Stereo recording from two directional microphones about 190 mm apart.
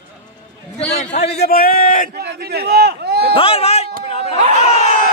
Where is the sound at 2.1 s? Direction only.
60° right (ahead or behind).